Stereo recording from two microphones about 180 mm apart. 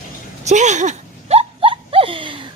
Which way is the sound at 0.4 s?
40° right (ahead or behind).